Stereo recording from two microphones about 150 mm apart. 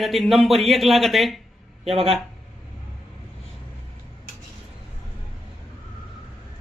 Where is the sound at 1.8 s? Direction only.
40° right (ahead or behind).